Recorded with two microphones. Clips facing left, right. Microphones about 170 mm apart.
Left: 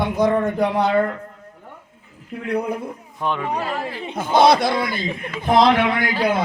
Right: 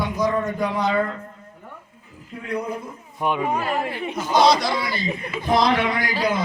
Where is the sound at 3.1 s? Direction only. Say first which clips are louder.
Right 1 dB; 10° right (ahead or behind).